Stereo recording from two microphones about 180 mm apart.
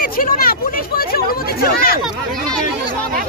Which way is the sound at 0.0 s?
55° left (ahead or behind).